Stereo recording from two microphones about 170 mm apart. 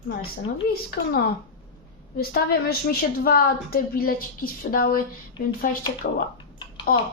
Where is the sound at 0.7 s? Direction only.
65° left (ahead or behind).